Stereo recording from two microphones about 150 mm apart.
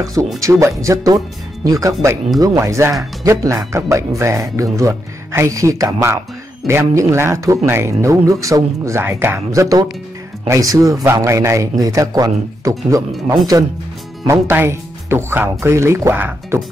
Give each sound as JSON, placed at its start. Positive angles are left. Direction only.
{"t": 0.0, "sound": "speech", "side_deg": -20}
{"t": 14.2, "sound": "speech", "side_deg": -15}